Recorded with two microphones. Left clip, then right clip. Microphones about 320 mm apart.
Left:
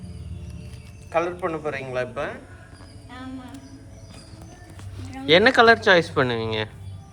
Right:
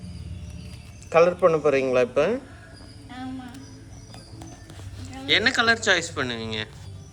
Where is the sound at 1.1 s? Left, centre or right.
Centre.